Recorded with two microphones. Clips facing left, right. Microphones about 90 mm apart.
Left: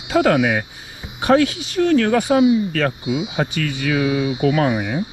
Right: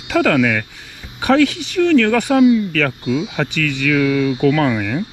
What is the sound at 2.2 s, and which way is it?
Speech, 20° left (ahead or behind).